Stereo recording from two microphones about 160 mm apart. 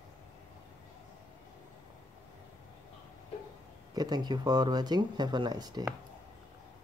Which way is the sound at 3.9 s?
25° right (ahead or behind).